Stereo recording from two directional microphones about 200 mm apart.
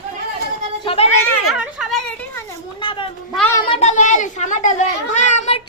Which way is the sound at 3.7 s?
35° left (ahead or behind).